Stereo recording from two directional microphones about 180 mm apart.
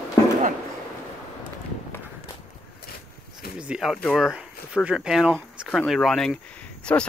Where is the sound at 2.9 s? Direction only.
55° left (ahead or behind).